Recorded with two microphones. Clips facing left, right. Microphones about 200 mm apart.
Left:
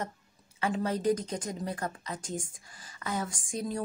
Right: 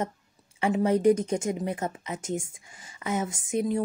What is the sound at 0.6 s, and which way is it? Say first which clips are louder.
Speech: right 7 dB; 25° right (ahead or behind).